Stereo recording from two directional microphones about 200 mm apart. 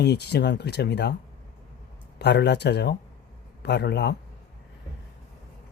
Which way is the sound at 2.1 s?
55° left (ahead or behind).